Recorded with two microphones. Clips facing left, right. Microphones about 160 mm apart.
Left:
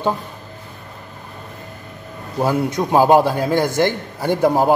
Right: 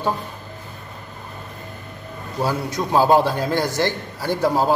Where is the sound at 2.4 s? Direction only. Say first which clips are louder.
Left 5 dB; 15° left (ahead or behind).